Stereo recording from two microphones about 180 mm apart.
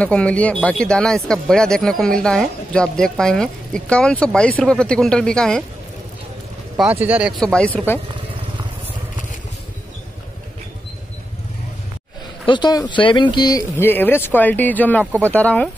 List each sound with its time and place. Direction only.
0.0 s speech: 5° left (ahead or behind)
6.8 s speech: 10° right (ahead or behind); by 8.0 s 10° left (ahead or behind)
12.4 s speech: 25° left (ahead or behind); by 15.7 s 10° left (ahead or behind)